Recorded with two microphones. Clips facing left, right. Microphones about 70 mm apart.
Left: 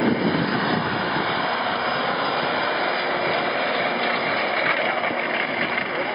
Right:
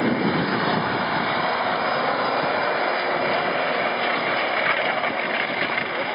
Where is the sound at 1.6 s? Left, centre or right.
Centre.